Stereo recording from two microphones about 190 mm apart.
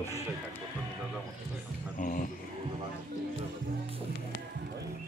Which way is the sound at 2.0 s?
45° left (ahead or behind).